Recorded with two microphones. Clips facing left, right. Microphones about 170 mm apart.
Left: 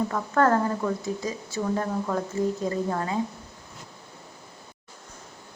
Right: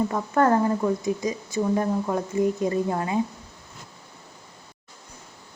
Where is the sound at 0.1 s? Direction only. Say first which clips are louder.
Right 1 dB; 15° right (ahead or behind).